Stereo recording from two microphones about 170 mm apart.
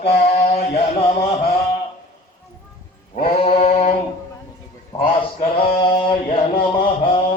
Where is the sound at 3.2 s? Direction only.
35° left (ahead or behind).